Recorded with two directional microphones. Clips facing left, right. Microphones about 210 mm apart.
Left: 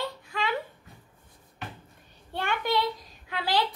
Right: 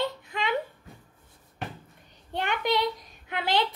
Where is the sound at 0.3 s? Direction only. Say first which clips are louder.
Right 1 dB; 20° right (ahead or behind).